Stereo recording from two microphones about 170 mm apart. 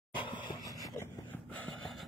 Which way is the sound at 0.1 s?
30° left (ahead or behind).